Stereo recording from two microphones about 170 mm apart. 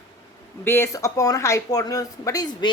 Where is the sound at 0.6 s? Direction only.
15° left (ahead or behind).